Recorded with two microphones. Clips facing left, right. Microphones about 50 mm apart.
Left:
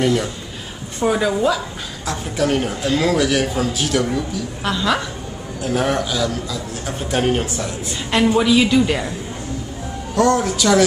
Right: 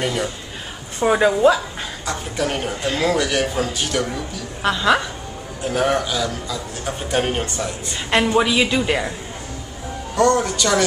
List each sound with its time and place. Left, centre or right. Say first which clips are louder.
0.0 s a man's voice: left 4 dB; centre
0.9 s a woman's voice: right 2 dB; right
2.0 s a man's voice: left 4 dB; centre
4.6 s speech: right 3 dB; centre
5.6 s a man's voice: even; centre
8.4 s speech: left 3 dB; centre
10.1 s a man's voice: left 1 dB; centre